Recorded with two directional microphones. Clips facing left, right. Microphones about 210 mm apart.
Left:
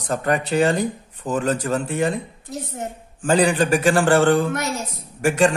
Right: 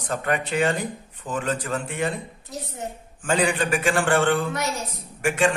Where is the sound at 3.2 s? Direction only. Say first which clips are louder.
Left 5 dB; 40° left (ahead or behind).